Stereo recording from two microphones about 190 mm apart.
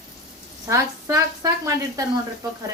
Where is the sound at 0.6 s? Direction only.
15° right (ahead or behind).